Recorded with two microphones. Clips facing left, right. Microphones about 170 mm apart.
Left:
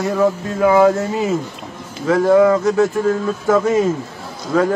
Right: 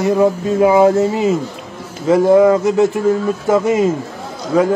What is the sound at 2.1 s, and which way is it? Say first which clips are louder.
Speech: right 2 dB; 20° right (ahead or behind).